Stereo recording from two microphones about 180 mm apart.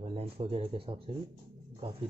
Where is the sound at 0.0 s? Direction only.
35° right (ahead or behind).